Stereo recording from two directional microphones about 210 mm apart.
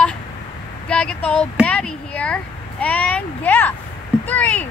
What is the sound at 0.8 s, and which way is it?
Speech, 5° left (ahead or behind).